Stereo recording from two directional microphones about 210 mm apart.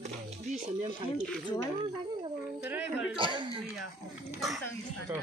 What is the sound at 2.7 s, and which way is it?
Speech, 5° right (ahead or behind).